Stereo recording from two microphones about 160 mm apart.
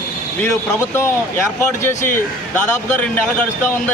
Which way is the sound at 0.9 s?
15° left (ahead or behind).